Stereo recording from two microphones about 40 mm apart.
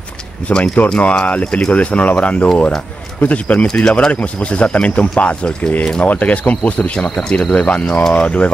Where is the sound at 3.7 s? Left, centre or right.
Centre.